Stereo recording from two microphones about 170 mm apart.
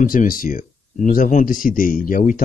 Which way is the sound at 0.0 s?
55° left (ahead or behind).